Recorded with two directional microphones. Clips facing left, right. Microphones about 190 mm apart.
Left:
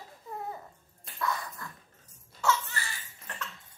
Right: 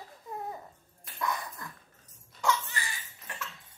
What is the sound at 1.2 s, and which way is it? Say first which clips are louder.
Dog: left 1 dB; 15° right (ahead or behind).